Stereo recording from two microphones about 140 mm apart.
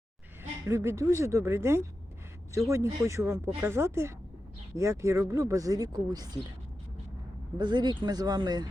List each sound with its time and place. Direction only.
0.7 s a woman's voice: 20° right (ahead or behind)
7.6 s speech: 30° right (ahead or behind)